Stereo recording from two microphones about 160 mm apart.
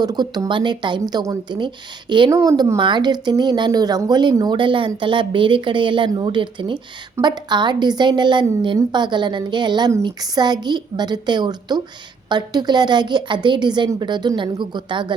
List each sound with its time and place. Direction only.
0.0 s a woman's voice: 25° right (ahead or behind)